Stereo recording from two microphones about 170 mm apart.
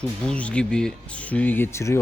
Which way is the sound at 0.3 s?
5° left (ahead or behind).